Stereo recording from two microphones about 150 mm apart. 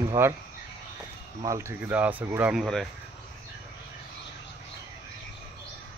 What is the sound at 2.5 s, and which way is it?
Speech, centre (ahead or behind).